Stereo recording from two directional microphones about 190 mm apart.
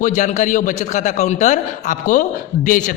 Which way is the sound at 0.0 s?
40° left (ahead or behind).